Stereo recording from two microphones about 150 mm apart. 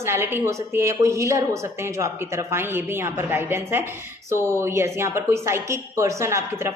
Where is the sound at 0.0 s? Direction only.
15° right (ahead or behind).